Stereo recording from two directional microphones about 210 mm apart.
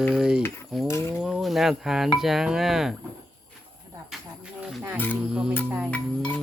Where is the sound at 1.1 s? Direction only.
Centre (ahead or behind).